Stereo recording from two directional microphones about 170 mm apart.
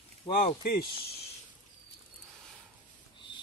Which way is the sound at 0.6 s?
65° left (ahead or behind).